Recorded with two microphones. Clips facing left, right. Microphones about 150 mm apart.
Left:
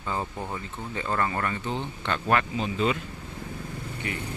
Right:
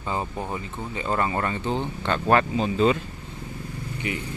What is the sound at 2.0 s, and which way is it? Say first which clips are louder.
Speech: right 4 dB; 35° right (ahead or behind).